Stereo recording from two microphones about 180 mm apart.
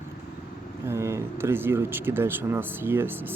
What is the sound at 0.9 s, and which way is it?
Speech, 15° right (ahead or behind).